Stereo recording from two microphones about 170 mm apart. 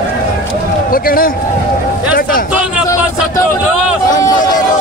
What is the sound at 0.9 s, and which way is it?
Speech, 55° left (ahead or behind).